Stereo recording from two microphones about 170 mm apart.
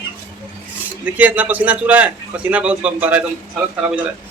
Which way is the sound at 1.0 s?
10° right (ahead or behind).